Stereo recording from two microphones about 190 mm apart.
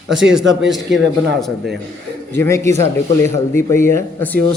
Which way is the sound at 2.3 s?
15° left (ahead or behind).